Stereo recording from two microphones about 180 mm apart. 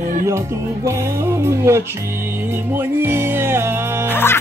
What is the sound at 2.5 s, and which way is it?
Music, 10° right (ahead or behind).